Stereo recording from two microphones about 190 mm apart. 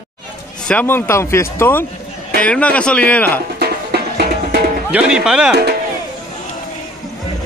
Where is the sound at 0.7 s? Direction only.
10° left (ahead or behind).